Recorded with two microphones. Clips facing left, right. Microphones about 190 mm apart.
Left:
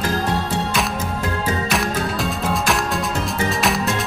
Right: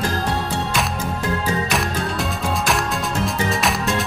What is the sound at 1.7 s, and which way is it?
Music, centre (ahead or behind).